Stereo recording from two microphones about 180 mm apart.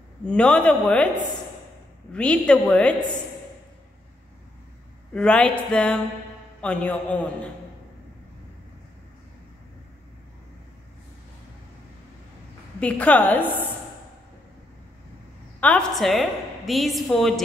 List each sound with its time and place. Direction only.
0.2 s a woman's voice: 5° left (ahead or behind)
2.1 s a woman's voice: 5° left (ahead or behind)
5.1 s a woman's voice: 5° left (ahead or behind)
12.8 s a woman's voice: 10° left (ahead or behind)
15.6 s a woman's voice: 5° left (ahead or behind)